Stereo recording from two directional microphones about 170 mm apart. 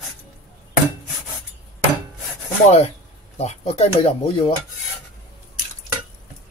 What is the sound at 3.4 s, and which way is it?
Speech, 40° left (ahead or behind).